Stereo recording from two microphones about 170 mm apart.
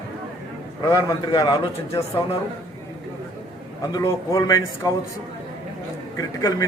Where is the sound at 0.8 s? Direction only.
20° left (ahead or behind).